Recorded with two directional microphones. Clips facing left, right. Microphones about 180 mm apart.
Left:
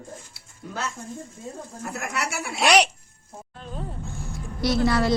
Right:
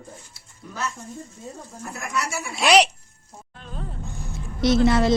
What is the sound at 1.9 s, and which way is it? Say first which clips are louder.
Speech: right 2 dB; 60° left (ahead or behind).